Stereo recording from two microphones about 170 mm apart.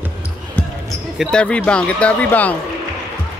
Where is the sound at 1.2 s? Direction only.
5° left (ahead or behind).